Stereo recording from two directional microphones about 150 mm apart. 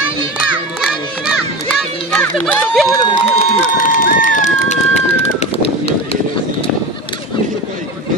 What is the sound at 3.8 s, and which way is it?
Run, 65° left (ahead or behind).